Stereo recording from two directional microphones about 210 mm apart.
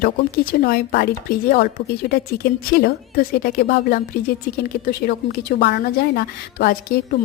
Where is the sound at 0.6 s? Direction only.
45° left (ahead or behind).